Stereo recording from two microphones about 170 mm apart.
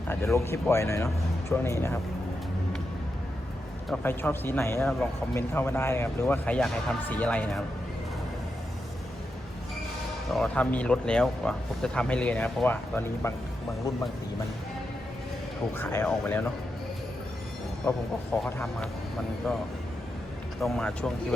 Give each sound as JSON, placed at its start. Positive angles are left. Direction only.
{"t": 0.1, "sound": "speech", "side_deg": 15}
{"t": 3.8, "sound": "speech", "side_deg": 10}
{"t": 10.3, "sound": "speech", "side_deg": 5}
{"t": 15.7, "sound": "speech", "side_deg": 15}
{"t": 18.4, "sound": "speech", "side_deg": 10}